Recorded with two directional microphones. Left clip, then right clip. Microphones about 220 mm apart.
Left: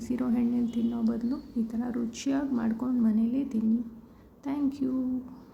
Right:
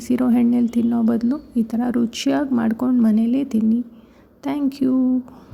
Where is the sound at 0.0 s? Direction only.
35° right (ahead or behind).